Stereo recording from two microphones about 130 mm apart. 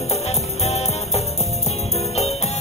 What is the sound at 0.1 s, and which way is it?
Music, 55° left (ahead or behind).